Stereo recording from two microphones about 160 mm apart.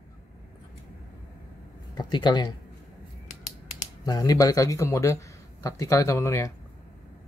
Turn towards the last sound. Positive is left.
turn(degrees=20)  # may be behind; listen again after turning